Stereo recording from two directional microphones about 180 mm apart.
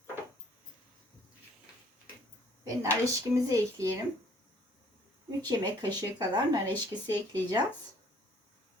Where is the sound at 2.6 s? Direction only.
15° right (ahead or behind).